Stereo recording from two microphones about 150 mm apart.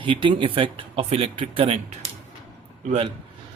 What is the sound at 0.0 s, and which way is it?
A man's voice, 35° right (ahead or behind).